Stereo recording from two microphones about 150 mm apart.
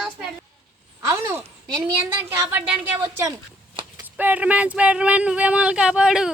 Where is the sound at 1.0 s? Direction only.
20° right (ahead or behind).